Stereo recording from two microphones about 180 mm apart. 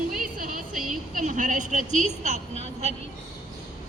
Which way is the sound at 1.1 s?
45° right (ahead or behind).